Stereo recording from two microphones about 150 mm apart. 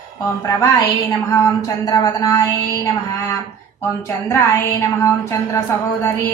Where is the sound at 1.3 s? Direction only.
20° left (ahead or behind).